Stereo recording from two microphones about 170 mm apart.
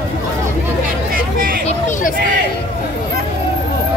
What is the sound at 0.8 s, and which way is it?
Vehicle, 60° right (ahead or behind).